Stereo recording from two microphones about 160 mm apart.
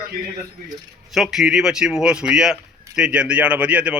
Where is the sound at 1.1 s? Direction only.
Centre (ahead or behind).